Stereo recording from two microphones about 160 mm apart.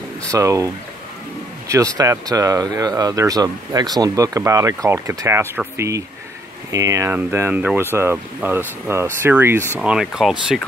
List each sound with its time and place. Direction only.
0.3 s speech: 20° right (ahead or behind)
1.7 s speech: 20° right (ahead or behind)
9.8 s speech: 5° right (ahead or behind)